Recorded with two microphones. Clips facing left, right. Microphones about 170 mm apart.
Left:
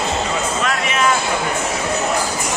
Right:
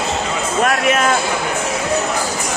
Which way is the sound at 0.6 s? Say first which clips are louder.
Right 6 dB; 50° right (ahead or behind).